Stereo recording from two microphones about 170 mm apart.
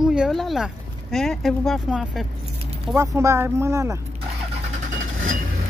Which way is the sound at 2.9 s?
20° right (ahead or behind).